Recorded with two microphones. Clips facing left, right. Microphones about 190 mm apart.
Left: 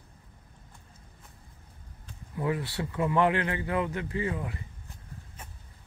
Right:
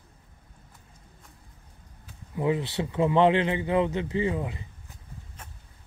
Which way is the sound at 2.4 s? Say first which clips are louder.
Right 4 dB; 20° right (ahead or behind).